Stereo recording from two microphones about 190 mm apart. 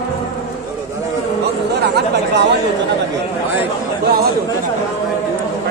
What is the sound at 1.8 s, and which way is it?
Speech, 60° right (ahead or behind).